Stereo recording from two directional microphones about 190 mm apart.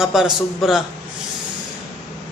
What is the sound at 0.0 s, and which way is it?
Speech, centre (ahead or behind).